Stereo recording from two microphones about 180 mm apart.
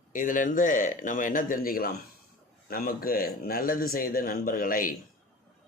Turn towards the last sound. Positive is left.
turn(degrees=50)  # may be behind; listen again after turning